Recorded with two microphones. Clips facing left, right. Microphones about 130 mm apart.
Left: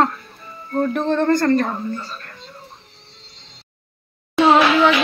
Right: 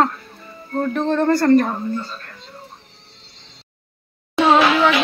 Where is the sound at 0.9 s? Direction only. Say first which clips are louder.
Right 1 dB; centre (ahead or behind).